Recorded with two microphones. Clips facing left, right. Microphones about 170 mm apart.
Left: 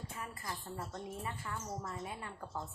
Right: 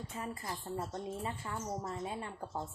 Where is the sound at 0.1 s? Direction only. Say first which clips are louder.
Right 6 dB; 25° right (ahead or behind).